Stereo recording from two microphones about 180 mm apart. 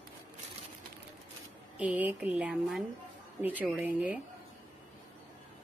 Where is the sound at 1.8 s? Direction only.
10° right (ahead or behind).